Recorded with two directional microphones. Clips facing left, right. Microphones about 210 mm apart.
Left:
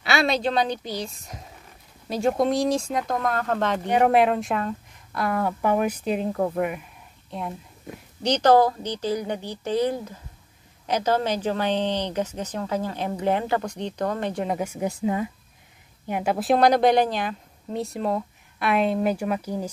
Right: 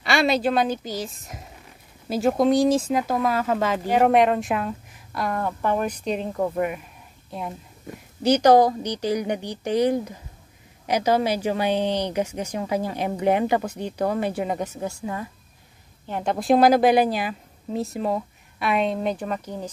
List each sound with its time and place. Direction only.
0.0 s a woman's voice: centre (ahead or behind)
14.6 s a woman's voice: 15° left (ahead or behind)